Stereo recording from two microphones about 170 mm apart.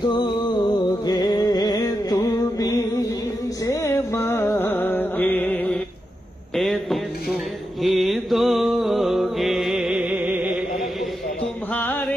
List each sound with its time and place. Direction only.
0.0 s music: 25° left (ahead or behind); by 5.8 s 10° left (ahead or behind)
6.5 s drawer open or close: centre (ahead or behind)
7.8 s mantra: centre (ahead or behind)
11.7 s music: 10° left (ahead or behind)